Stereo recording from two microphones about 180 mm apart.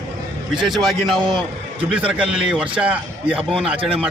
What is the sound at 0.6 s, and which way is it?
A man's voice, centre (ahead or behind).